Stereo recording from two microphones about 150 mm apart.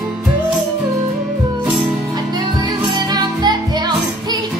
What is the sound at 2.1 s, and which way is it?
Music, 30° right (ahead or behind).